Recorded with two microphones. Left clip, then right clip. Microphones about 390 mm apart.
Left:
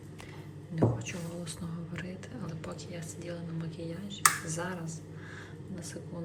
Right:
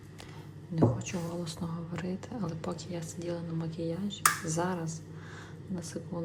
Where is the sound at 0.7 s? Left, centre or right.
Centre.